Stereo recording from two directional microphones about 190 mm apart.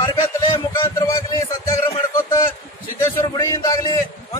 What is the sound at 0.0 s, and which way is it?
Music, 20° left (ahead or behind).